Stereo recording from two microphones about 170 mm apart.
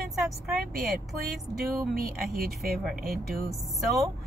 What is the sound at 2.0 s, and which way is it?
Speech, 60° right (ahead or behind).